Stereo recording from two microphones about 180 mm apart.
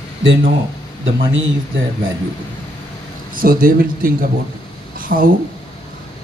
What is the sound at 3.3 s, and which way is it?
Speech, 55° right (ahead or behind).